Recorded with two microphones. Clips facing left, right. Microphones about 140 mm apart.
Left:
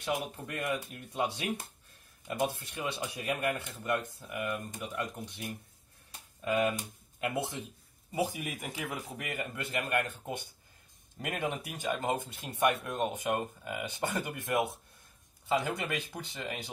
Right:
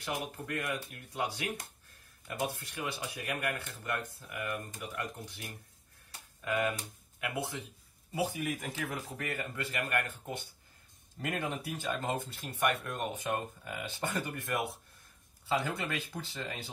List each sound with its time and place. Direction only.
0.7 s speech: 20° left (ahead or behind)
8.2 s speech: 15° left (ahead or behind)